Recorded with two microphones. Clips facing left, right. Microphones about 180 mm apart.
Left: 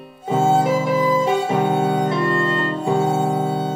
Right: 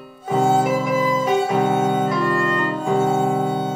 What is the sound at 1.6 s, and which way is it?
Music, 25° left (ahead or behind).